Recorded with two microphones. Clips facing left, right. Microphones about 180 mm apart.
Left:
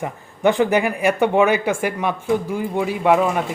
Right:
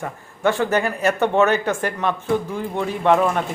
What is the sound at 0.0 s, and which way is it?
Speech, 15° left (ahead or behind).